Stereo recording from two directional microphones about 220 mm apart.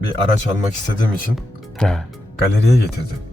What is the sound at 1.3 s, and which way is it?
Speech, centre (ahead or behind).